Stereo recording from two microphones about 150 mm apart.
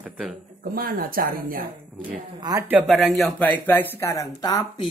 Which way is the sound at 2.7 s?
5° right (ahead or behind).